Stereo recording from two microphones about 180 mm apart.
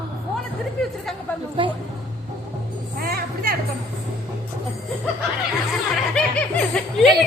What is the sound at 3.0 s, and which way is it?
Music, 60° right (ahead or behind).